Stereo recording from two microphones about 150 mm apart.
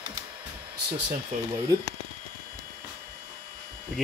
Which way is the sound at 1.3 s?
55° right (ahead or behind).